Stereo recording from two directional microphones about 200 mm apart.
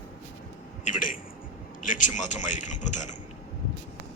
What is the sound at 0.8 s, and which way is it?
A man's voice, 40° left (ahead or behind).